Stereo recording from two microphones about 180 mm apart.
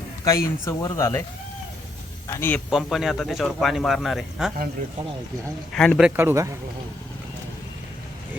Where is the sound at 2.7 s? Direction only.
Centre (ahead or behind).